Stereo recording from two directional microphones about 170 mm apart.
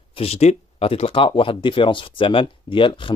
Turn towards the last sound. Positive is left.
turn(degrees=30)  # may be behind; listen again after turning